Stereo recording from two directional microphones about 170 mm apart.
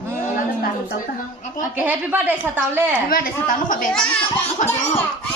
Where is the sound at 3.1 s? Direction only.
55° left (ahead or behind).